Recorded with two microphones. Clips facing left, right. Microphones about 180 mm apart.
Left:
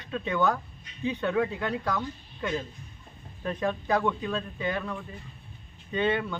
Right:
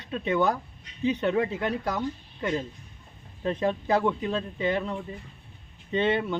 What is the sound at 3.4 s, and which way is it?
Speech, 25° right (ahead or behind).